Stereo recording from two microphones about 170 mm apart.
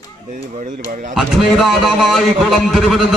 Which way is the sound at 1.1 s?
Centre (ahead or behind).